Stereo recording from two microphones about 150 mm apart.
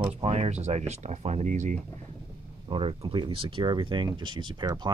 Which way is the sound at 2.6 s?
40° right (ahead or behind).